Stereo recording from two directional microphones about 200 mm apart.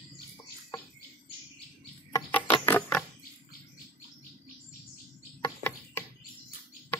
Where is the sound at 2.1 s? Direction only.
10° left (ahead or behind).